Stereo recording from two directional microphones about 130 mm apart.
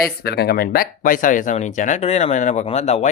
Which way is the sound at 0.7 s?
90° left.